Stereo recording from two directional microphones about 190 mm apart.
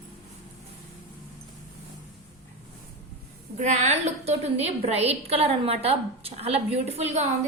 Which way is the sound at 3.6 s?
40° right (ahead or behind).